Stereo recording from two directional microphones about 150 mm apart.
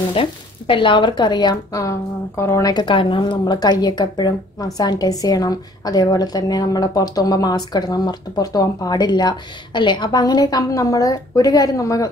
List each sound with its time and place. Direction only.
0.1 s speech: 35° left (ahead or behind)